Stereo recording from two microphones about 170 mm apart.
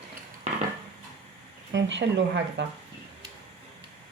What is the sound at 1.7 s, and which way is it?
Speech, 90° right.